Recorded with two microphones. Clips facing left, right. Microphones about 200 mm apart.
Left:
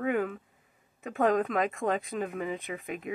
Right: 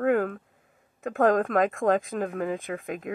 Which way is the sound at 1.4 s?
45° right (ahead or behind).